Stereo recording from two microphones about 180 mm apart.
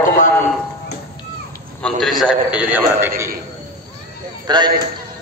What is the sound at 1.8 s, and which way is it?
A man's voice, 5° left (ahead or behind).